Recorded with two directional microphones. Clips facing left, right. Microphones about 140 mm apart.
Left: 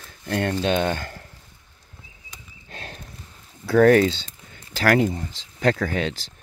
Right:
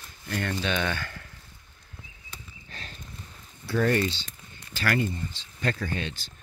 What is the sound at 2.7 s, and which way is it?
Walk, 55° left (ahead or behind).